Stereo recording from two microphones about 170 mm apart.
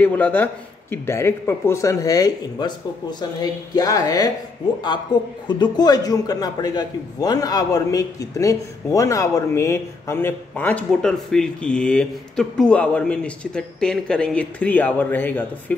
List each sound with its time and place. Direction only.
0.0 s a man's voice: 10° left (ahead or behind)